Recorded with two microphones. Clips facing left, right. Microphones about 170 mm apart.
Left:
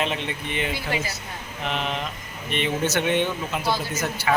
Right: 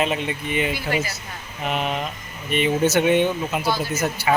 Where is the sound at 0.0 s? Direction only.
5° right (ahead or behind).